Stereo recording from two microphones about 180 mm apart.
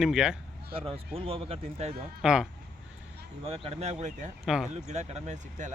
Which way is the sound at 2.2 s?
5° right (ahead or behind).